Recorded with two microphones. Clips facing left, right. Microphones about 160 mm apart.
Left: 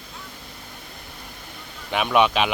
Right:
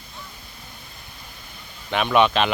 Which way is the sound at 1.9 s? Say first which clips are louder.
Right 1 dB; 10° left (ahead or behind).